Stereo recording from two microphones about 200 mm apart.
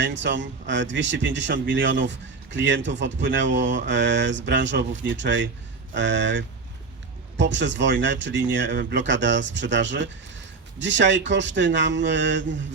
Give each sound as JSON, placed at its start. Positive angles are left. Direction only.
{"t": 0.0, "sound": "speech", "side_deg": -65}